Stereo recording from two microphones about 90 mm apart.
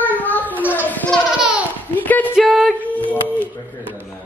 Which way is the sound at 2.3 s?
5° right (ahead or behind).